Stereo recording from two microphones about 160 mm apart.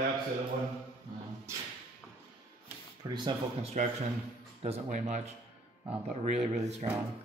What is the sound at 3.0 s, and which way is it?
Speech, 30° right (ahead or behind).